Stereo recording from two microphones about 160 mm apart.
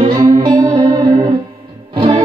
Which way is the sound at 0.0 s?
25° right (ahead or behind).